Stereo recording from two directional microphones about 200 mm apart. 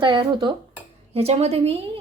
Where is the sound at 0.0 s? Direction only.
25° right (ahead or behind).